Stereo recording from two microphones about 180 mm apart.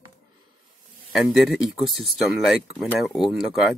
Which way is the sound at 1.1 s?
Centre (ahead or behind).